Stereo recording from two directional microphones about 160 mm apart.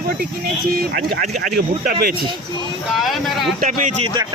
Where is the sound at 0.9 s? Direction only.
60° right (ahead or behind).